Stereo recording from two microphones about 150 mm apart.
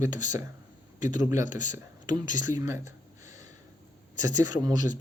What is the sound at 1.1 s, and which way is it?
Speech, 25° right (ahead or behind).